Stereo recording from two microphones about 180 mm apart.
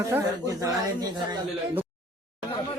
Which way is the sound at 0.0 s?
20° right (ahead or behind).